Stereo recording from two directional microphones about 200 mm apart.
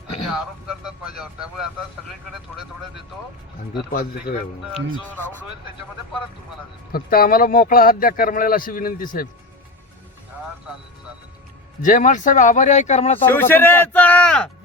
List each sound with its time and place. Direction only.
0.3 s speech: centre (ahead or behind)
3.9 s speech: 50° left (ahead or behind)
5.1 s speech: 10° left (ahead or behind)
6.9 s speech: 45° left (ahead or behind)
11.8 s speech: 40° left (ahead or behind)
13.2 s speech: 10° left (ahead or behind)